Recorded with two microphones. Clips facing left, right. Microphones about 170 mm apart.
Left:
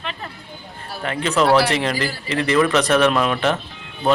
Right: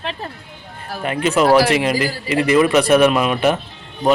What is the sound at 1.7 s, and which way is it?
Speech, 10° right (ahead or behind).